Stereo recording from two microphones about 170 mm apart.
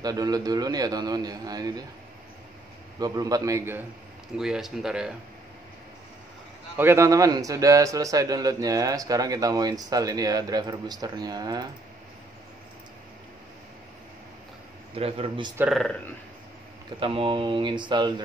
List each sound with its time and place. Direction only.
0.0 s a man's voice: 20° right (ahead or behind)
3.0 s a man's voice: 20° right (ahead or behind)
4.4 s speech: 5° right (ahead or behind)
6.8 s a man's voice: 15° right (ahead or behind)
15.0 s a man's voice: 35° right (ahead or behind)
15.7 s speech: 5° left (ahead or behind)
17.0 s a man's voice: 30° right (ahead or behind)